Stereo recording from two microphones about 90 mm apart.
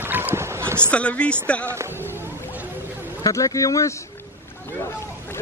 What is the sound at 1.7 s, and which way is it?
Speech, 30° right (ahead or behind).